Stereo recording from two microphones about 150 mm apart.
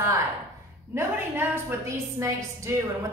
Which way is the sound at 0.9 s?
15° right (ahead or behind).